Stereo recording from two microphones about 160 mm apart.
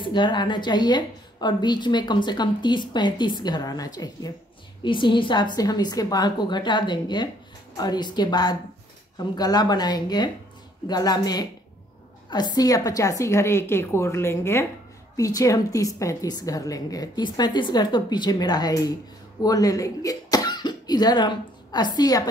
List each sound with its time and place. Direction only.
0.0 s a woman's voice: 30° left (ahead or behind)